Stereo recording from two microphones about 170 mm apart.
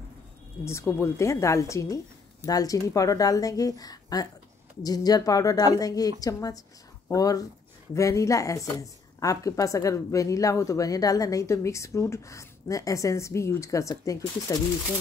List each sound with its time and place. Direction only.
0.7 s a woman's voice: 15° left (ahead or behind)